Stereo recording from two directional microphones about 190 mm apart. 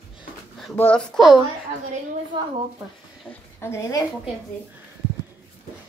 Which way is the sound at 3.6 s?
15° left (ahead or behind).